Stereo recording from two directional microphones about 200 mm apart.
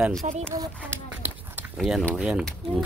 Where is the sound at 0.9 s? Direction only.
10° right (ahead or behind).